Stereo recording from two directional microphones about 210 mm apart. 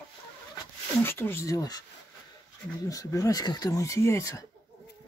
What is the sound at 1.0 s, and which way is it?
Speech, 10° left (ahead or behind).